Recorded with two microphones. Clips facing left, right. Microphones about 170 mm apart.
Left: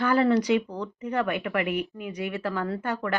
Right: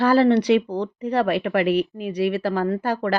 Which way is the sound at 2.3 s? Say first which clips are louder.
Right 7 dB; 30° right (ahead or behind).